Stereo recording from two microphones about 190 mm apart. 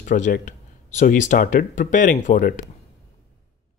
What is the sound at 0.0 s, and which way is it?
Speech, 45° left (ahead or behind).